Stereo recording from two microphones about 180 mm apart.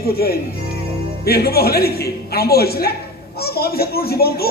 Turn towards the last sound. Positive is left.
turn(degrees=60)  # may be behind; listen again after turning